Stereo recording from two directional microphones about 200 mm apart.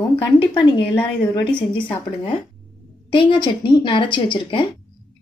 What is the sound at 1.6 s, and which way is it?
Speech, 25° left (ahead or behind).